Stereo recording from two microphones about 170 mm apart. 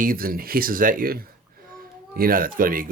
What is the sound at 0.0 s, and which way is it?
Speech, 55° right (ahead or behind).